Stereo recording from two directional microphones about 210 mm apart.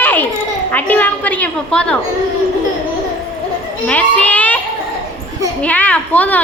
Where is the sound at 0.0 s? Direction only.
10° left (ahead or behind).